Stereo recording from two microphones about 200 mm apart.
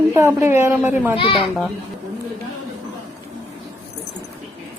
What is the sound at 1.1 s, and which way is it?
Speech, 25° left (ahead or behind).